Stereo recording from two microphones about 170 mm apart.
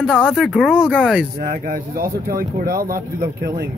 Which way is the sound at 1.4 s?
55° right (ahead or behind).